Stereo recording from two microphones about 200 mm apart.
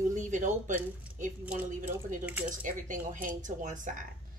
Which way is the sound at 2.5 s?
40° right (ahead or behind).